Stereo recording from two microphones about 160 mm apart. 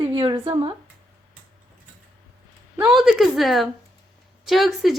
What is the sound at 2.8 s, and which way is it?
A woman's voice, centre (ahead or behind).